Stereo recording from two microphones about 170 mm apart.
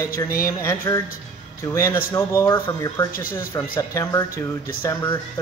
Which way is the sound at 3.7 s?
15° left (ahead or behind).